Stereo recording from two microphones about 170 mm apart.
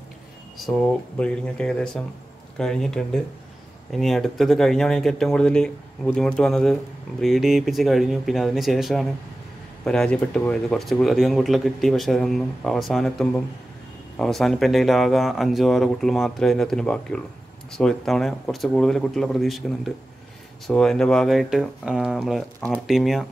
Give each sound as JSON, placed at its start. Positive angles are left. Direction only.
{"t": 0.6, "sound": "speech", "side_deg": 5}